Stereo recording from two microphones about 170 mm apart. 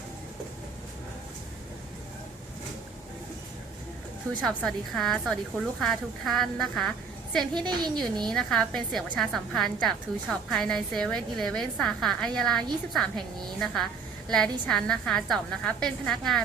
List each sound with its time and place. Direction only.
4.4 s a woman's voice: centre (ahead or behind)
7.7 s a woman's voice: 25° right (ahead or behind)
8.2 s a woman's voice: 5° left (ahead or behind)